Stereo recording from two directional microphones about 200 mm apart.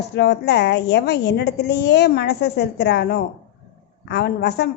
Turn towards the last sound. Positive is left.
turn(degrees=55)  # may be behind; listen again after turning